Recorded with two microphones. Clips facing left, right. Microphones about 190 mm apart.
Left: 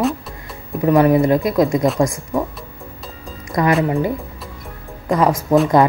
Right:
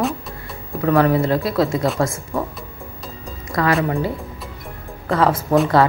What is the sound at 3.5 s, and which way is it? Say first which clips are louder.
Speech: left 2 dB; 20° left (ahead or behind).